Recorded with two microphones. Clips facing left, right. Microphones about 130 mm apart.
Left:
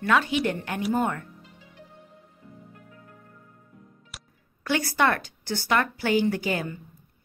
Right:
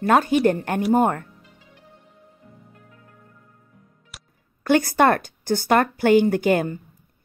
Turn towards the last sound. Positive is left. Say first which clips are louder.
# right 8 dB
turn(degrees=-50)  # may be behind; listen again after turning